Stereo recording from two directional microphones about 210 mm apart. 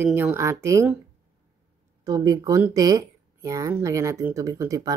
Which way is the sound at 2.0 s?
20° right (ahead or behind).